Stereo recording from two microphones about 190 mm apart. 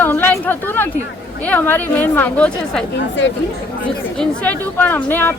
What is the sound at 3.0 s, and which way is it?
Speech, 70° left (ahead or behind).